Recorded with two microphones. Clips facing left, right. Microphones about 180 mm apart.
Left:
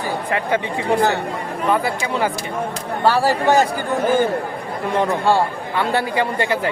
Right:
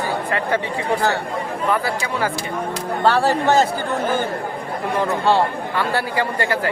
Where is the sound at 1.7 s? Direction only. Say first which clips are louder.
Left 2 dB; 20° left (ahead or behind).